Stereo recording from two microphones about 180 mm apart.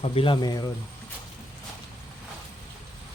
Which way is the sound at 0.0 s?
30° left (ahead or behind).